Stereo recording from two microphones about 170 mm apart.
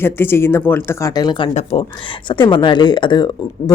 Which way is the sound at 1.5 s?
40° left (ahead or behind).